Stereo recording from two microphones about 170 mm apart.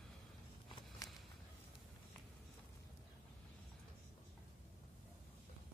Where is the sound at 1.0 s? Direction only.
20° left (ahead or behind).